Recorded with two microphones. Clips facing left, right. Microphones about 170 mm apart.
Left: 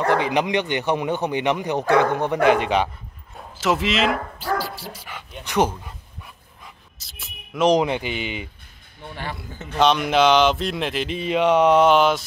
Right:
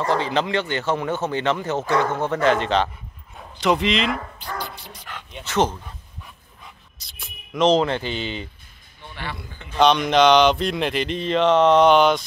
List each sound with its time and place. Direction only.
0.2 s speech: 15° left (ahead or behind)
9.1 s a man's voice: 45° left (ahead or behind)
9.8 s speech: 5° left (ahead or behind)